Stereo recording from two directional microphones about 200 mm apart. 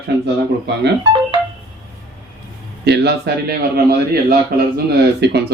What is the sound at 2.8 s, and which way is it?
Speech, 55° right (ahead or behind).